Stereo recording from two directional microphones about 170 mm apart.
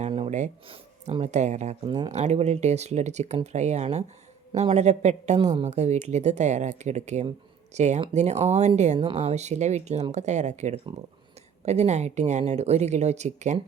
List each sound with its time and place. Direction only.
0.0 s a sound: 40° right (ahead or behind)
0.7 s speech: 35° right (ahead or behind)
1.8 s speech: 25° right (ahead or behind)
2.1 s a woman's voice: 40° right (ahead or behind)